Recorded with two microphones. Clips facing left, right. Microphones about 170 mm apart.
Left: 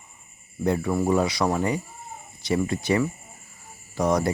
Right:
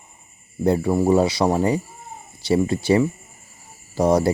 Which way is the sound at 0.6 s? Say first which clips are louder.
Right 5 dB; 30° right (ahead or behind).